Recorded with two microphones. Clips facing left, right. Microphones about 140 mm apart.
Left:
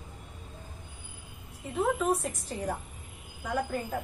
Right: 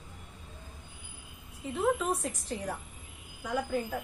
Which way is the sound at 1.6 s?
Centre (ahead or behind).